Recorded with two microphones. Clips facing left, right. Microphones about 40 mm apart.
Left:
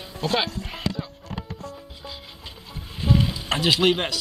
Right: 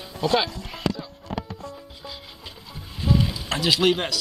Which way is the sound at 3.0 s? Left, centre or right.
Centre.